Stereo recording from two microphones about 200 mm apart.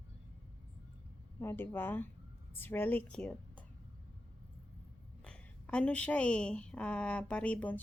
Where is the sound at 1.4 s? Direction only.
10° left (ahead or behind).